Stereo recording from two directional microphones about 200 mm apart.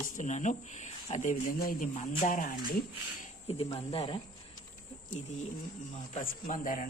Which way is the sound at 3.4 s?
30° left (ahead or behind).